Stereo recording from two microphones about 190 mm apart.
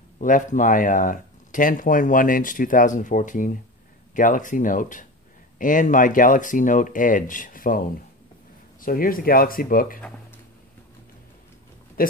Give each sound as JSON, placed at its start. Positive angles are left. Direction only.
{"t": 0.2, "sound": "speech", "side_deg": 45}
{"t": 8.8, "sound": "speech", "side_deg": 50}
{"t": 12.0, "sound": "speech", "side_deg": 50}